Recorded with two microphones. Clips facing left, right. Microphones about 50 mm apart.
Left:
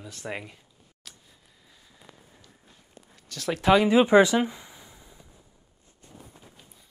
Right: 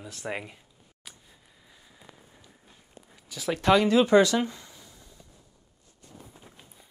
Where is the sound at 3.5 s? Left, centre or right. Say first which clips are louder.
Left 1 dB; centre.